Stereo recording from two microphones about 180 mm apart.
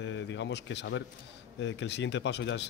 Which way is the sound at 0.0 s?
80° left.